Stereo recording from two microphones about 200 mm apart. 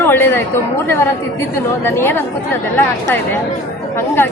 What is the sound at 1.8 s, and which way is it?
Speech, 10° left (ahead or behind).